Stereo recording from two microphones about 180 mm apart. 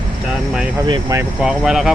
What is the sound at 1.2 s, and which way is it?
Speech, 5° right (ahead or behind).